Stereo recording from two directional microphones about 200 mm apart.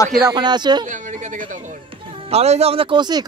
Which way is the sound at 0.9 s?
35° right (ahead or behind).